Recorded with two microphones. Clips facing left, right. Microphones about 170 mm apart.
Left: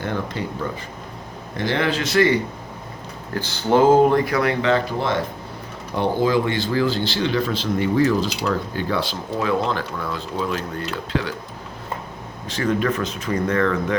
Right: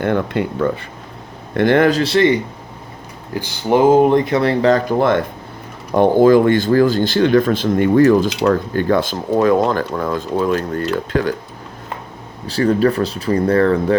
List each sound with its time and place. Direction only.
0.0 s speech: 60° right (ahead or behind)
12.5 s speech: 35° right (ahead or behind)